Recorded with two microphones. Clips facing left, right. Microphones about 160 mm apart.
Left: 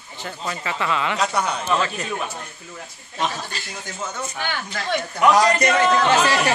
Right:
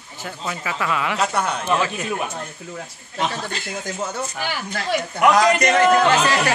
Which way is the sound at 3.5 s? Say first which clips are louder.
Right 5 dB; 65° right (ahead or behind).